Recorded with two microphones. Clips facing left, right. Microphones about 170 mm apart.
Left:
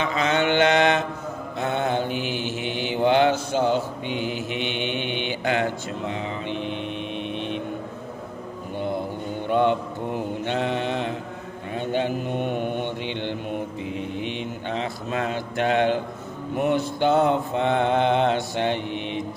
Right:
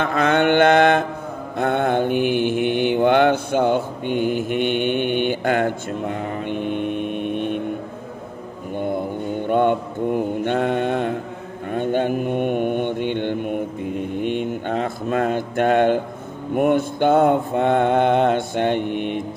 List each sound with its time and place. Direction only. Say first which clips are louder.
0.0 s mantra: right 5 dB; 55° right (ahead or behind)
8.7 s mantra: right 4 dB; 50° right (ahead or behind)